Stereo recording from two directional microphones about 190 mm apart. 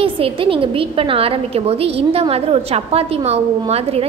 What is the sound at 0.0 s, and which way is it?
A woman's voice, 30° right (ahead or behind).